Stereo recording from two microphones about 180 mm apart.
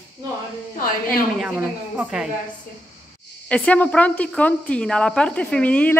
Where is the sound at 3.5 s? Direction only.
5° left (ahead or behind).